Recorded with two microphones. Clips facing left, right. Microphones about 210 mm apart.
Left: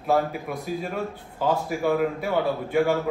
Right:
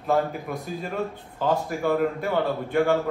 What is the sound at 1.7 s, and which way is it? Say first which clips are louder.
A man's voice: even; 5° left (ahead or behind).